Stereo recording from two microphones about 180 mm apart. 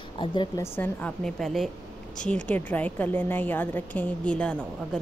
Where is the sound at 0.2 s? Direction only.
25° left (ahead or behind).